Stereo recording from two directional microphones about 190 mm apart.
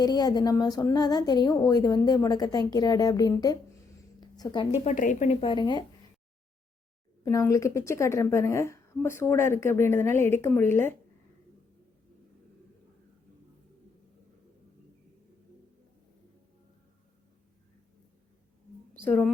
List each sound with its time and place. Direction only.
0.0 s a woman's voice: 20° left (ahead or behind)
4.7 s a woman's voice: 35° left (ahead or behind)
5.4 s a woman's voice: 25° left (ahead or behind)
7.3 s a woman's voice: 15° left (ahead or behind)
18.9 s a woman's voice: 10° left (ahead or behind)